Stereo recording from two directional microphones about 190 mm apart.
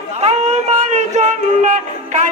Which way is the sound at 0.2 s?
35° right (ahead or behind).